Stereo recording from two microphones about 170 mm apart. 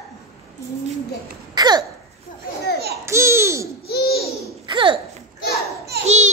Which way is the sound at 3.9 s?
65° left (ahead or behind).